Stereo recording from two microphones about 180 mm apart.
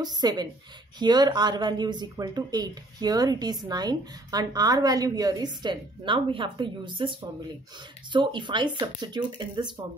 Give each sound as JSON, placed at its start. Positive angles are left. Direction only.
{"t": 0.0, "sound": "speech", "side_deg": -25}